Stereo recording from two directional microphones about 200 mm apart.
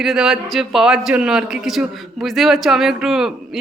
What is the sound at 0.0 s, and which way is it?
A man's voice, centre (ahead or behind).